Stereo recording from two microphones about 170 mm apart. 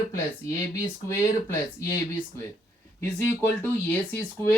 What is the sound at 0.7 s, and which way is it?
Speech, 15° left (ahead or behind).